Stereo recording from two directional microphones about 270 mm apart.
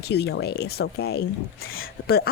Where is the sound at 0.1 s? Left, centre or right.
Left.